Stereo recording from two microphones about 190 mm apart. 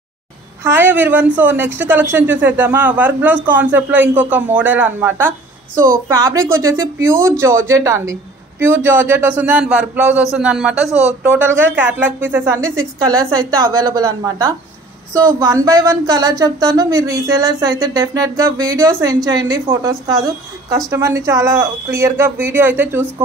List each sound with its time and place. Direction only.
0.7 s a man's voice: 10° right (ahead or behind)